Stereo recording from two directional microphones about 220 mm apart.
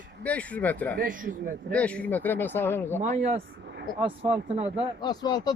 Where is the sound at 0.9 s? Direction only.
40° right (ahead or behind).